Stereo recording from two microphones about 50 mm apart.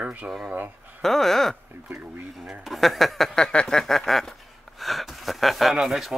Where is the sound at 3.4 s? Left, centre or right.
Centre.